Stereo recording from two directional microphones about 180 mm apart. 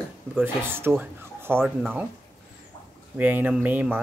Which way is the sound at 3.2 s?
10° right (ahead or behind).